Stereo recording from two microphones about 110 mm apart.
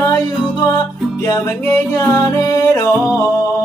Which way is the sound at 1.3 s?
25° left (ahead or behind).